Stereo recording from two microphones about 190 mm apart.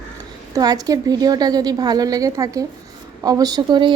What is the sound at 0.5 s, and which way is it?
A woman's voice, 20° right (ahead or behind).